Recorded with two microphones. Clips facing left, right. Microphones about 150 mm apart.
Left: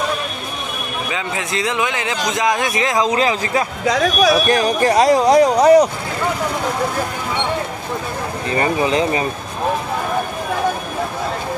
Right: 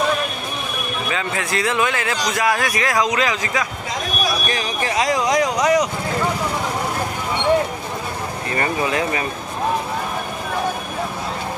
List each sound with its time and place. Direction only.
1.1 s a man's voice: 20° left (ahead or behind)
3.8 s speech: 90° left
4.5 s speech: 50° left (ahead or behind); by 5.9 s 35° left (ahead or behind)
8.5 s a man's voice: 25° left (ahead or behind)